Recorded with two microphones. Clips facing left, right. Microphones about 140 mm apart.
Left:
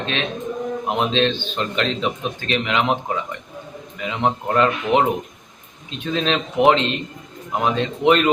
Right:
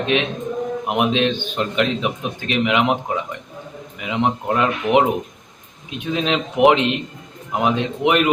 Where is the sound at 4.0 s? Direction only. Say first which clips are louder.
Right 1 dB; 15° right (ahead or behind).